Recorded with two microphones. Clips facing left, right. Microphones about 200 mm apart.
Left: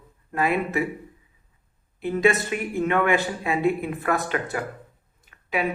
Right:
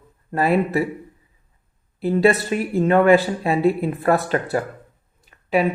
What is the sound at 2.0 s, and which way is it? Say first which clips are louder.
Speech: right 4 dB; 35° right (ahead or behind).